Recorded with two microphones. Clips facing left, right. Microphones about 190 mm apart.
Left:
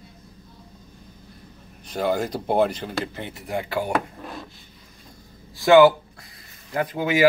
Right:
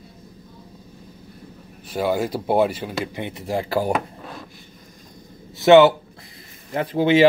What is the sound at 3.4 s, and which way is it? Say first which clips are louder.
Speech: right 4 dB; 35° right (ahead or behind).